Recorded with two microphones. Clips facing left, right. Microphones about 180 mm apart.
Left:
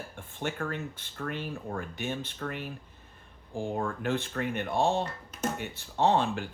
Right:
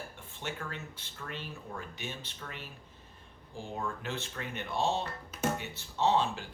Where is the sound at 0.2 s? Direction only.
55° left (ahead or behind).